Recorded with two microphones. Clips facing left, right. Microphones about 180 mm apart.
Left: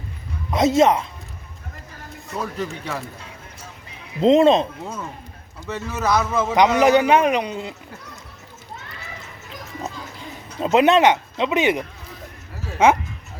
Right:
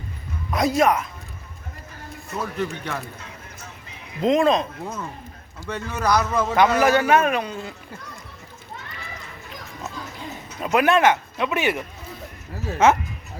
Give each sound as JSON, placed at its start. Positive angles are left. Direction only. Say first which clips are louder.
{"t": 0.5, "sound": "speech", "louder": "left 3 dB", "side_deg": 25}
{"t": 2.4, "sound": "speech", "louder": "right 1 dB", "side_deg": 5}
{"t": 4.2, "sound": "speech", "louder": "left 5 dB", "side_deg": 25}
{"t": 5.6, "sound": "speech", "louder": "even", "side_deg": 5}
{"t": 6.4, "sound": "a man's voice", "louder": "left 3 dB", "side_deg": 20}
{"t": 10.6, "sound": "a man's voice", "louder": "left 3 dB", "side_deg": 25}